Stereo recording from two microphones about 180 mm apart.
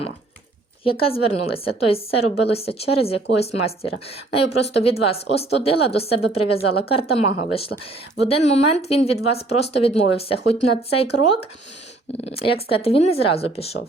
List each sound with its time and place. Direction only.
0.9 s speech: 30° left (ahead or behind)